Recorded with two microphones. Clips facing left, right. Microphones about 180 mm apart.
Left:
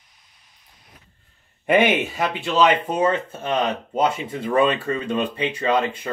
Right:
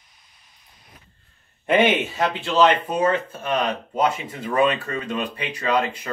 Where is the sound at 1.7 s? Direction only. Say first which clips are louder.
Left 1 dB; 10° left (ahead or behind).